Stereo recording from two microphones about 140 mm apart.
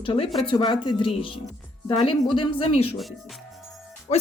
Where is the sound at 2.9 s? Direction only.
Centre (ahead or behind).